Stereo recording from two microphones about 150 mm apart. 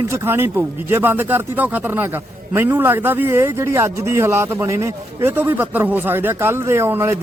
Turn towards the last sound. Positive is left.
turn(degrees=-15)  # may be behind; listen again after turning